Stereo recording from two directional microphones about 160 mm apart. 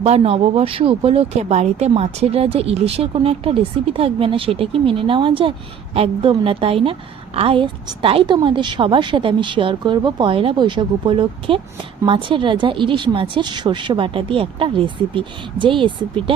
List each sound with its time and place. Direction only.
0.0 s a woman's voice: 40° right (ahead or behind)